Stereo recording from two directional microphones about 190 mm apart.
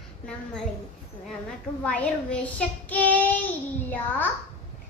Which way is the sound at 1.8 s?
5° left (ahead or behind).